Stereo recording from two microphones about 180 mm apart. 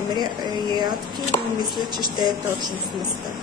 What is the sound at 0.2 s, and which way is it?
Speech, 25° right (ahead or behind).